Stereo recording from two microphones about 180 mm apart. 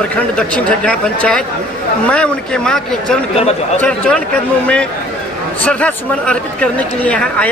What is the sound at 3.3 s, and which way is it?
Speech, 35° left (ahead or behind).